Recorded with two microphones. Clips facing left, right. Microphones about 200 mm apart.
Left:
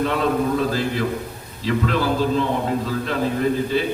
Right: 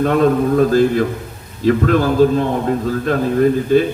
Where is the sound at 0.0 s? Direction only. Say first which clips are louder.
Right 6 dB; 50° right (ahead or behind).